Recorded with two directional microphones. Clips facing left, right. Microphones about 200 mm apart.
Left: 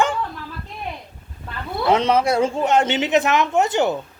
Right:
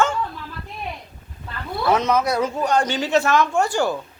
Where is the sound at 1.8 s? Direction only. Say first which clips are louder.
Left 2 dB; 30° left (ahead or behind).